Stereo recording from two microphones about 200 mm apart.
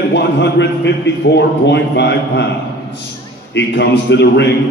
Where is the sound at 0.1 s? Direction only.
60° left (ahead or behind).